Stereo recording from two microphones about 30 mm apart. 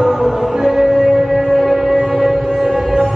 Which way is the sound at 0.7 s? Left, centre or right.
Centre.